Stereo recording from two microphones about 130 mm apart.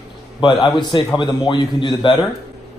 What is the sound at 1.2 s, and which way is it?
A man's voice, 35° left (ahead or behind).